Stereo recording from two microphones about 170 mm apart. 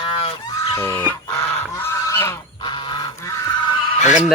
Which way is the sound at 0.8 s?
15° left (ahead or behind).